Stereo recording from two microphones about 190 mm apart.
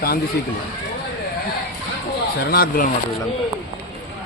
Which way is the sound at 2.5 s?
55° left (ahead or behind).